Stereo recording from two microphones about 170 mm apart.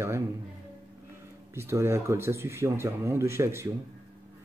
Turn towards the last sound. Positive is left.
turn(degrees=-15)  # may be behind; listen again after turning